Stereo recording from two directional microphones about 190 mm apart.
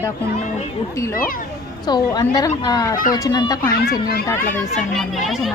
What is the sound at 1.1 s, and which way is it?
Speech, 50° left (ahead or behind).